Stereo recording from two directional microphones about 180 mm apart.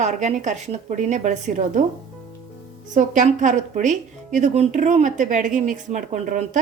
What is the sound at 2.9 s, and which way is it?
Speech, 45° right (ahead or behind).